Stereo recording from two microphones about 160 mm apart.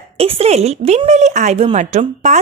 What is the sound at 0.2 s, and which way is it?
A woman's voice, 40° right (ahead or behind).